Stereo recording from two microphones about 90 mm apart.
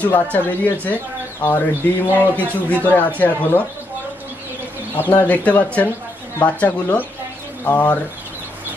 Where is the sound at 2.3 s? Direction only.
20° left (ahead or behind).